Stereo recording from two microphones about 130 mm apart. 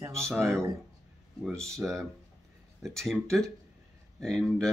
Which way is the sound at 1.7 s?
5° left (ahead or behind).